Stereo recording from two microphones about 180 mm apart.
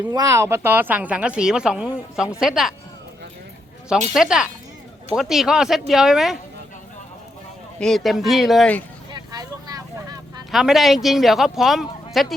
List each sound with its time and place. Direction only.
0.1 s speech: 20° right (ahead or behind); by 2.7 s centre (ahead or behind)
4.1 s speech: 5° right (ahead or behind)
7.8 s speech: centre (ahead or behind)
9.1 s a sound: 20° right (ahead or behind)
10.5 s speech: centre (ahead or behind)